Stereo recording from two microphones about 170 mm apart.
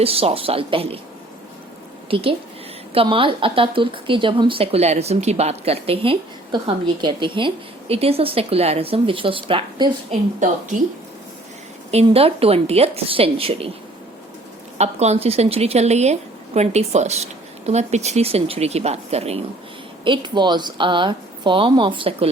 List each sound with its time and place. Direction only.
0.0 s speech: 35° right (ahead or behind)
2.0 s a woman's voice: 30° right (ahead or behind)
10.1 s a woman's voice: 50° right (ahead or behind)
11.9 s speech: 35° right (ahead or behind)
14.8 s speech: 40° right (ahead or behind)
20.1 s a woman's voice: 25° right (ahead or behind)